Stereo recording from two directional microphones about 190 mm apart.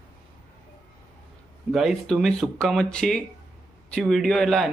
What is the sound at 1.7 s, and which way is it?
A man's voice, centre (ahead or behind).